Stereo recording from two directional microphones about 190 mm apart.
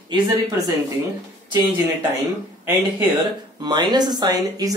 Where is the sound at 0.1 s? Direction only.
25° right (ahead or behind).